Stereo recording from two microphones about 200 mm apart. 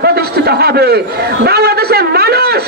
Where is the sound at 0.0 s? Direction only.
50° right (ahead or behind).